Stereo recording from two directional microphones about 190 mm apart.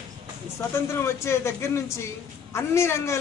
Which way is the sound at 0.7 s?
15° left (ahead or behind).